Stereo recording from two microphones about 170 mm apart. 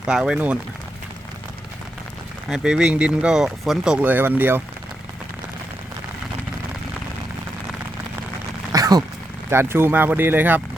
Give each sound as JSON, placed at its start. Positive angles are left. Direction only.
{"t": 0.0, "sound": "speech", "side_deg": -5}
{"t": 2.5, "sound": "speech", "side_deg": -5}
{"t": 8.7, "sound": "a sound", "side_deg": -20}
{"t": 9.5, "sound": "speech", "side_deg": -15}